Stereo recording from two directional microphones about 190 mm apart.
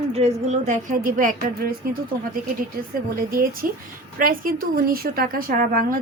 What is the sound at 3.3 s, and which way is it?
Speech, 50° right (ahead or behind).